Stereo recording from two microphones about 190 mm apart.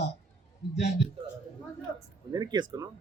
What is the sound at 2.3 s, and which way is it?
Speech, 20° right (ahead or behind).